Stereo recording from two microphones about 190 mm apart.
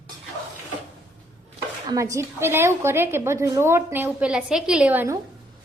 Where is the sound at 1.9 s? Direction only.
15° right (ahead or behind).